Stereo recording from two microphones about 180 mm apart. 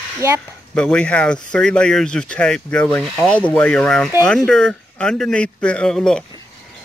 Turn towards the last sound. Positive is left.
turn(degrees=5)  # may be behind; listen again after turning